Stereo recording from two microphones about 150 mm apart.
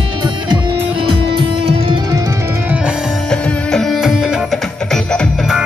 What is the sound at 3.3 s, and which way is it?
Music, 5° left (ahead or behind).